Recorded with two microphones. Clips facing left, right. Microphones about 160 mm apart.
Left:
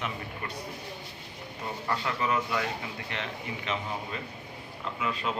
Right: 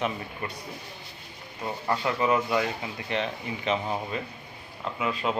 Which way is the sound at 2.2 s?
20° right (ahead or behind).